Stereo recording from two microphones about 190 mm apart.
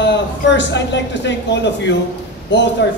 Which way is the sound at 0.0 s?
65° left (ahead or behind).